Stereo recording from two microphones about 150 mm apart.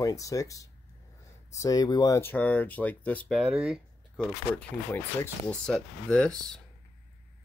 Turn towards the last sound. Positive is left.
turn(degrees=5)  # may be behind; listen again after turning